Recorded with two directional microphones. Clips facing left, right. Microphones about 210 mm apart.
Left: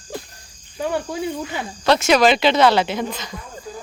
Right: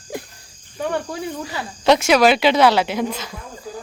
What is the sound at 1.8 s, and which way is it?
Speech, 15° right (ahead or behind).